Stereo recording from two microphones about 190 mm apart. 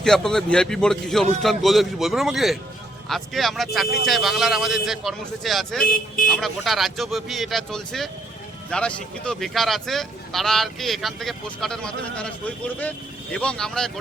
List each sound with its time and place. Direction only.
0.0 s speech: centre (ahead or behind)
5.8 s speech: 50° left (ahead or behind)
6.2 s speech: centre (ahead or behind)